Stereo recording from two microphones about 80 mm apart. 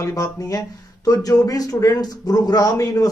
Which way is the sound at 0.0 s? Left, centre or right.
Left.